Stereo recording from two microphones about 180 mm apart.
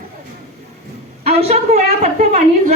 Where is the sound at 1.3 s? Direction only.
35° right (ahead or behind).